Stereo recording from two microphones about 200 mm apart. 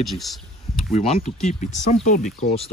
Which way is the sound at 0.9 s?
30° left (ahead or behind).